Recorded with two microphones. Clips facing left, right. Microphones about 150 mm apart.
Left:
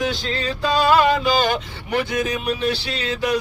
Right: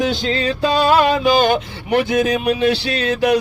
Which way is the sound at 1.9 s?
60° right (ahead or behind).